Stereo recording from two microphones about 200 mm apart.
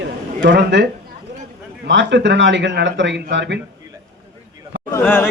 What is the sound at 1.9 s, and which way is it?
A man's voice, 60° right (ahead or behind).